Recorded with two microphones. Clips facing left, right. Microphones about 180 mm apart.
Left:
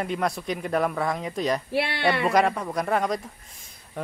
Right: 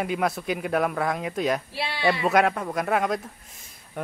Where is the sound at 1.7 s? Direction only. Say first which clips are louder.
Left 4 dB; 60° left (ahead or behind).